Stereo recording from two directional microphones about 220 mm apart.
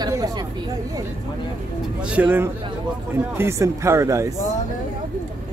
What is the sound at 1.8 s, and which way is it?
Speech, 5° right (ahead or behind).